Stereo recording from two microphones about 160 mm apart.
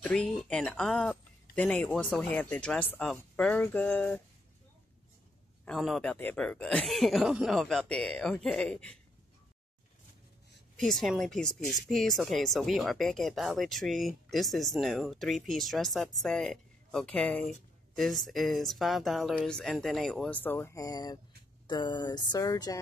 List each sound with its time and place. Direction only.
0.0 s speech: 5° left (ahead or behind)
5.7 s speech: centre (ahead or behind)
10.8 s speech: centre (ahead or behind); by 22.8 s 20° left (ahead or behind)